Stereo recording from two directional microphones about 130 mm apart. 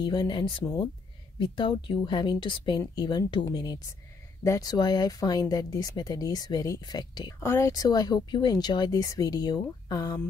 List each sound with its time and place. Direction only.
0.0 s speech: 35° left (ahead or behind)
7.4 s speech: 20° left (ahead or behind)